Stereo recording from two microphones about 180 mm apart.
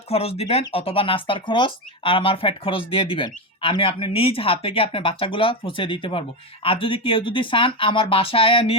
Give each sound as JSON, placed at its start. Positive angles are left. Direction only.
{"t": 0.1, "sound": "speech", "side_deg": 35}